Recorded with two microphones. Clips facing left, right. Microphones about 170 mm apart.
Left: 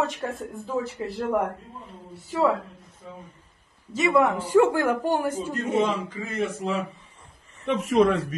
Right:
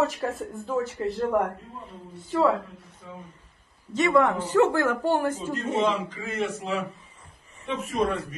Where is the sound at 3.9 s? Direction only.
5° left (ahead or behind).